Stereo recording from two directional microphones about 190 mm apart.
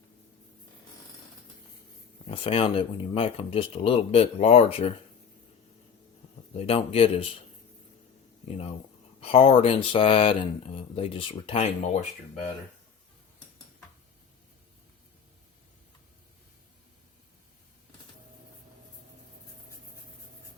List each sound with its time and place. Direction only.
2.2 s speech: 30° left (ahead or behind)
6.5 s speech: 35° left (ahead or behind)
8.4 s speech: 35° left (ahead or behind)